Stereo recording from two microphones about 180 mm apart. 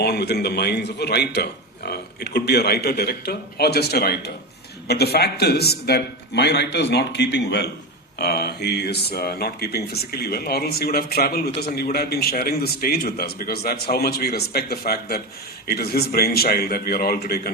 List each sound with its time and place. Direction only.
0.0 s a man's voice: 65° left (ahead or behind)